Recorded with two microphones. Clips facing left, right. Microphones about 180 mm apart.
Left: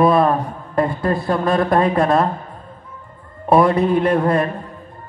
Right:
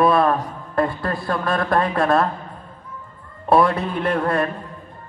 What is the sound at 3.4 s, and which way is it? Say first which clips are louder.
A man's voice: left 3 dB; 20° left (ahead or behind).